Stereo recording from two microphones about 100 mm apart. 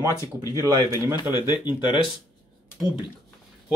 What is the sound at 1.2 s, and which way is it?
Speech, 45° left (ahead or behind).